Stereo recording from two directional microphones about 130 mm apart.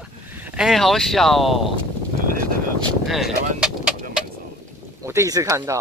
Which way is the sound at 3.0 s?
Centre (ahead or behind).